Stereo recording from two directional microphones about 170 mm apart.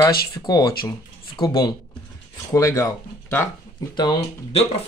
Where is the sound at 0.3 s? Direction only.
25° left (ahead or behind).